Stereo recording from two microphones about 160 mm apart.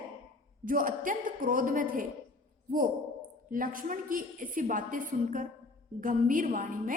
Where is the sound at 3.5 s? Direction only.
60° right (ahead or behind).